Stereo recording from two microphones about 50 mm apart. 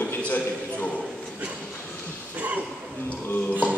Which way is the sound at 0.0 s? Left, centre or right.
Left.